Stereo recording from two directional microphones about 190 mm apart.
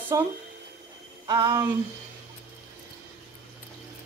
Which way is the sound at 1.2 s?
20° right (ahead or behind).